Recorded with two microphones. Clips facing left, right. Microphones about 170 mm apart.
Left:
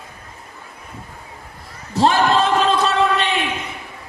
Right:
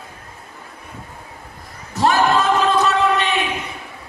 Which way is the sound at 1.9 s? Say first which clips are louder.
Left 1 dB; 30° left (ahead or behind).